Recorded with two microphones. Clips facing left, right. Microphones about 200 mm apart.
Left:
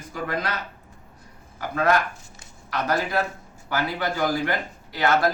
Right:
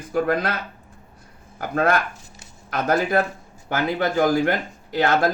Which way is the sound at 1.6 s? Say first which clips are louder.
Right 1 dB; 50° right (ahead or behind).